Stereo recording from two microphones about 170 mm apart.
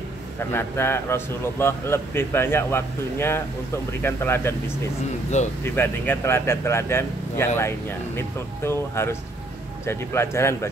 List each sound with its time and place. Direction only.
0.4 s speech: 15° left (ahead or behind)
5.6 s speech: 15° left (ahead or behind)